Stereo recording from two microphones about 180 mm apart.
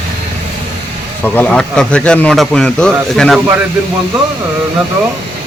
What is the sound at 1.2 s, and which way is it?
Speech, 10° left (ahead or behind).